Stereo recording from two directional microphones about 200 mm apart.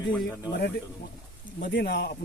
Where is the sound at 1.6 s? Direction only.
55° left (ahead or behind).